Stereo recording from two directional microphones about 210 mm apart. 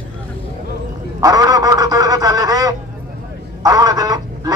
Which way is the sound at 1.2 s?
15° right (ahead or behind).